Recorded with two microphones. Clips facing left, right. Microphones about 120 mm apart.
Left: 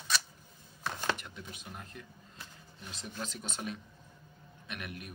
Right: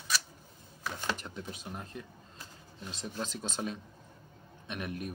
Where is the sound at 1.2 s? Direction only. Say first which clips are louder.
Right 5 dB; 35° right (ahead or behind).